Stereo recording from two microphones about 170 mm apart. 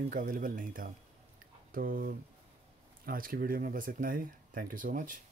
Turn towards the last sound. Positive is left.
turn(degrees=-50)  # may be behind; listen again after turning